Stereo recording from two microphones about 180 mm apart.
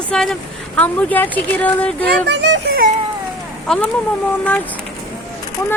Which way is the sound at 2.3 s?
75° right (ahead or behind).